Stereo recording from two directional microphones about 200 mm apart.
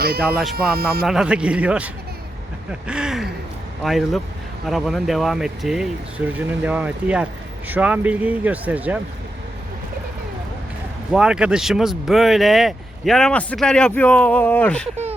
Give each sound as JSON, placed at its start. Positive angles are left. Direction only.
{"t": 0.2, "sound": "speech", "side_deg": -5}
{"t": 0.5, "sound": "speech", "side_deg": -50}
{"t": 1.0, "sound": "speech", "side_deg": -5}
{"t": 11.1, "sound": "speech", "side_deg": -5}